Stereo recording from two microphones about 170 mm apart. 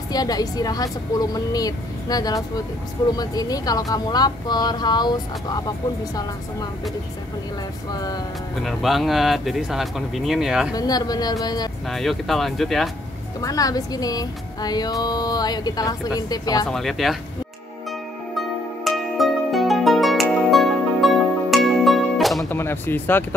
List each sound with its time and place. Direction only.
0.1 s speech: 20° left (ahead or behind)
7.9 s speech: 20° left (ahead or behind)
8.6 s speech: centre (ahead or behind)
10.7 s speech: 20° left (ahead or behind)
11.9 s speech: centre (ahead or behind)
13.4 s speech: 20° left (ahead or behind)
16.6 s speech: centre (ahead or behind)
18.9 s music: centre (ahead or behind)
22.4 s a sound: 15° left (ahead or behind)